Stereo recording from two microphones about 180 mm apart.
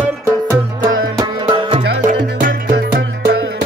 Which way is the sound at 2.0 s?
50° right (ahead or behind).